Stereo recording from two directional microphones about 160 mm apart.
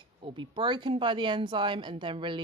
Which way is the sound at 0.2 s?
30° right (ahead or behind).